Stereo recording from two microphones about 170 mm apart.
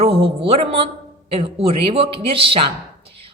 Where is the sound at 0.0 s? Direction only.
35° right (ahead or behind).